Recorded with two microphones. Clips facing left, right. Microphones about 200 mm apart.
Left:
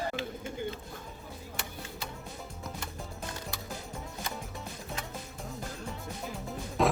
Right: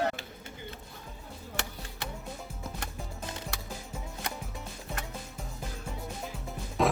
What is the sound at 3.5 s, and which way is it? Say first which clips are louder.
Music: even; 75° right (ahead or behind).